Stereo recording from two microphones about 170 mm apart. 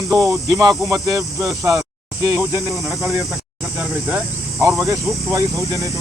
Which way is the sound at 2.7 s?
Centre (ahead or behind).